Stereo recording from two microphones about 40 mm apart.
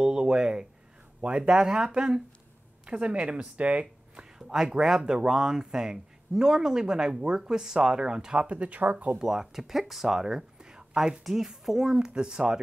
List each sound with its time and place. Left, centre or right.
0.0 s a sound: centre
1.2 s speech: right
4.2 s speech: centre
8.5 s speech: right
9.2 s speech: centre
11.2 s speech: centre
12.1 s speech: right